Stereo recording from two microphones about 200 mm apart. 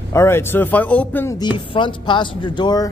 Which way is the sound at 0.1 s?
15° left (ahead or behind).